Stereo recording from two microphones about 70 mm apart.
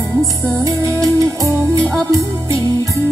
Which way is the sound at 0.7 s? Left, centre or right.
Right.